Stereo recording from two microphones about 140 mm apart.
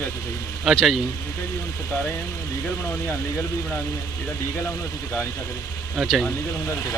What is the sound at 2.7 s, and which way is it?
Speech, 15° left (ahead or behind).